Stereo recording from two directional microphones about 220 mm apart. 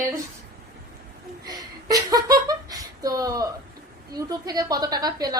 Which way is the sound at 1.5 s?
15° right (ahead or behind).